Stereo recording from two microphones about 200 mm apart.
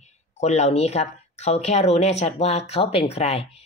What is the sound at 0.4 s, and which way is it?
A woman's voice, 35° left (ahead or behind).